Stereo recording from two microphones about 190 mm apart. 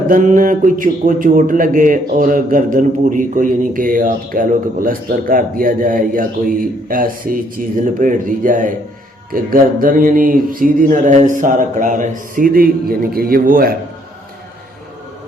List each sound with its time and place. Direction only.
0.1 s speech: 45° right (ahead or behind)